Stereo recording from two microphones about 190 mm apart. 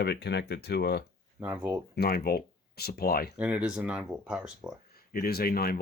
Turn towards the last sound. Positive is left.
turn(degrees=50)  # may be behind; listen again after turning